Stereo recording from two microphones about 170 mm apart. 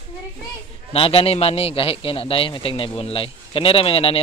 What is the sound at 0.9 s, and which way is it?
A man's voice, 35° left (ahead or behind).